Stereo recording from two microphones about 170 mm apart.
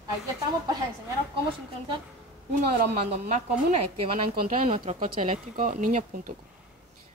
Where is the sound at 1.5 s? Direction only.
30° right (ahead or behind).